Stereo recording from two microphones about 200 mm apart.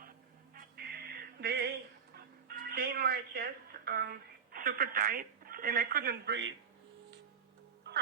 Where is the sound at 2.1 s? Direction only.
50° right (ahead or behind).